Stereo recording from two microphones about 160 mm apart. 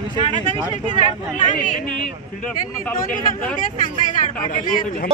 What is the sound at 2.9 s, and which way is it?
Speech, 60° left (ahead or behind).